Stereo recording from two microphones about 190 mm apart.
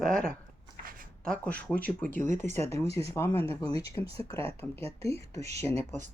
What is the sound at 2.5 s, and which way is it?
Speech, 15° left (ahead or behind).